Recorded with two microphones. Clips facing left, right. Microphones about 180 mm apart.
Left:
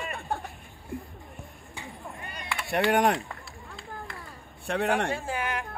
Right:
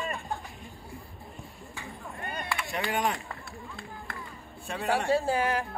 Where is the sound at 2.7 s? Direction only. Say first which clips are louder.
Left 8 dB; 65° left (ahead or behind).